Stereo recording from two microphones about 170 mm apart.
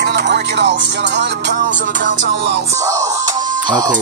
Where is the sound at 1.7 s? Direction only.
50° right (ahead or behind).